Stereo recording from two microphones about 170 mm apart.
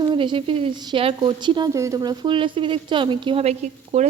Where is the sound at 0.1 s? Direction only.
30° right (ahead or behind).